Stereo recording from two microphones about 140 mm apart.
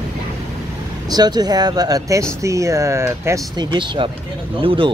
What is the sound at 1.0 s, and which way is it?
Speech, 30° right (ahead or behind).